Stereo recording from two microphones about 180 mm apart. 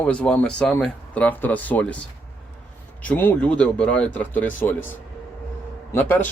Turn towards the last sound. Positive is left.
turn(degrees=10)  # may be behind; listen again after turning